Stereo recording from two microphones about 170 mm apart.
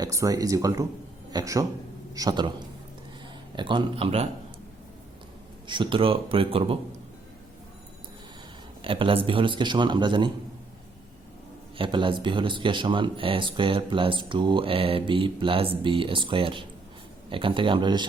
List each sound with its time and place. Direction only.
0.0 s speech: 20° right (ahead or behind)
3.5 s speech: 30° right (ahead or behind)
5.6 s speech: 30° right (ahead or behind)
8.8 s speech: 30° right (ahead or behind)
11.8 s speech: 30° right (ahead or behind)